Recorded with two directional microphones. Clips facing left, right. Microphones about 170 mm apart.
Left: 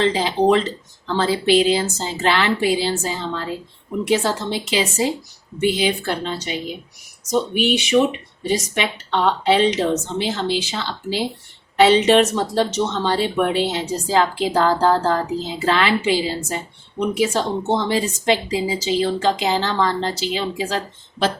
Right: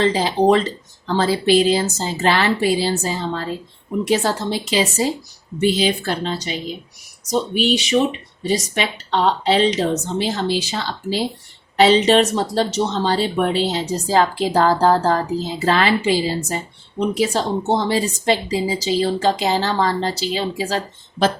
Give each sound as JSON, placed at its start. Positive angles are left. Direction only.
{"t": 0.0, "sound": "speech", "side_deg": -40}